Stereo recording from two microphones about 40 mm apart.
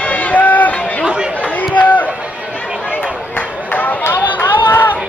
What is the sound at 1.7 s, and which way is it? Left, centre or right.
Run, left.